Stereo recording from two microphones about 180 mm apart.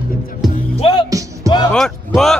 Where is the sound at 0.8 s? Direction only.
30° left (ahead or behind).